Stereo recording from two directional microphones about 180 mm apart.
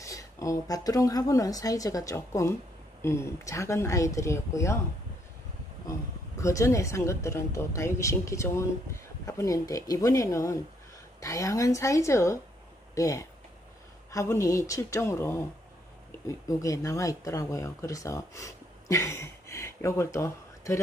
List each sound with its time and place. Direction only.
0.0 s a woman's voice: 20° left (ahead or behind)
5.9 s a woman's voice: 20° left (ahead or behind)